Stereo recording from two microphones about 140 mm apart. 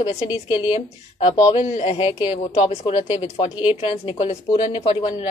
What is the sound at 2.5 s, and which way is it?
Speech, 50° left (ahead or behind).